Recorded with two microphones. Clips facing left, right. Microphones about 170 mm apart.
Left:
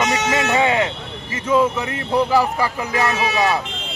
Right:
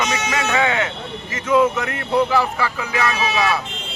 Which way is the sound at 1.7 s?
30° left (ahead or behind).